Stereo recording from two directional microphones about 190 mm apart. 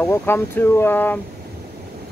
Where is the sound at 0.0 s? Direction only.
15° left (ahead or behind).